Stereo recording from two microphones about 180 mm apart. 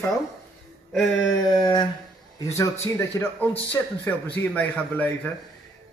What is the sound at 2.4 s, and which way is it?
Speech, 15° left (ahead or behind).